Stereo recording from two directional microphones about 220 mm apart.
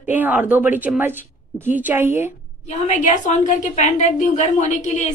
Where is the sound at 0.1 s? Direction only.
10° right (ahead or behind).